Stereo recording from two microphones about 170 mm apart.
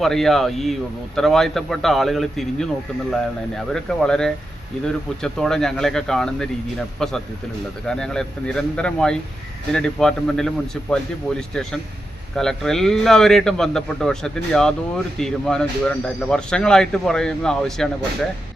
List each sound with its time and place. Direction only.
0.0 s speech: centre (ahead or behind)
3.7 s speech: 5° left (ahead or behind)